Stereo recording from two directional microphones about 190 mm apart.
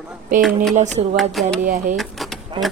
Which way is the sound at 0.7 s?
40° right (ahead or behind).